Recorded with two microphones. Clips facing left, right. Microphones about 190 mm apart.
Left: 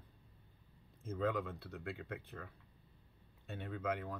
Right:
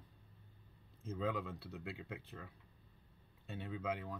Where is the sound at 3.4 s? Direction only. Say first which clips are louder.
Even; 55° left (ahead or behind).